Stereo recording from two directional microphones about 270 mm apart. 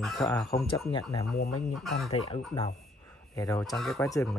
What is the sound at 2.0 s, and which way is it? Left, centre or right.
Speech, left.